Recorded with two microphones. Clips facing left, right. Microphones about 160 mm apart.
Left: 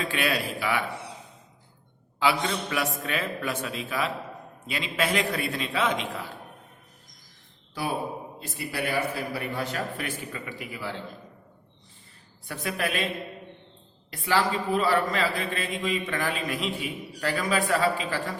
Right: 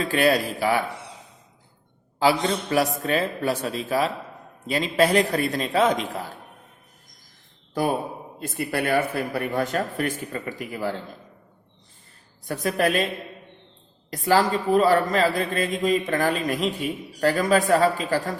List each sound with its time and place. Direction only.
0.0 s a man's voice: 40° right (ahead or behind)
2.1 s a man's voice: 40° right (ahead or behind)
7.7 s a man's voice: 45° right (ahead or behind)
12.5 s a man's voice: 40° right (ahead or behind)
14.1 s a man's voice: 40° right (ahead or behind)